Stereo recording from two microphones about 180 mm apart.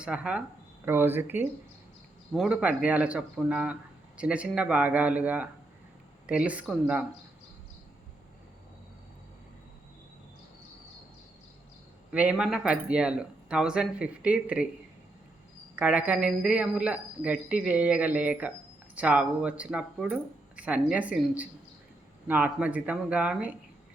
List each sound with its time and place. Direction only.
0.0 s speech: 5° right (ahead or behind)
12.1 s speech: 5° right (ahead or behind)
15.7 s speech: 5° right (ahead or behind)